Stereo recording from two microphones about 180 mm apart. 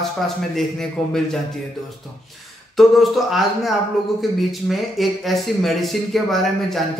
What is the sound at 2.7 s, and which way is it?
Speech, centre (ahead or behind).